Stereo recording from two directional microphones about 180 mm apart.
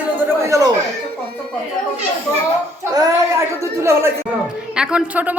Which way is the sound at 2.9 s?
20° right (ahead or behind).